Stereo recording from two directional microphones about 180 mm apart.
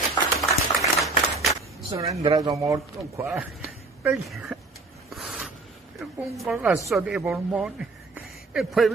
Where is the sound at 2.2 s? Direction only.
20° right (ahead or behind); by 4.6 s centre (ahead or behind).